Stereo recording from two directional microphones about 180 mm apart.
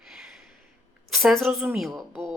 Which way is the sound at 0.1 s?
5° right (ahead or behind).